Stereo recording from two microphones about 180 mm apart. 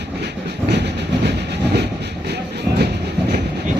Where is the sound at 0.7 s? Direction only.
70° right (ahead or behind).